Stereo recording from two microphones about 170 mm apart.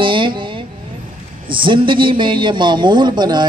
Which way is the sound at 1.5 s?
30° right (ahead or behind).